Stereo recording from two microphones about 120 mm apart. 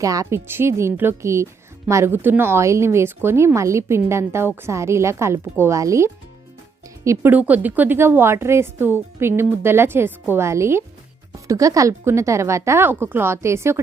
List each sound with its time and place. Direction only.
0.0 s a woman's voice: 30° right (ahead or behind)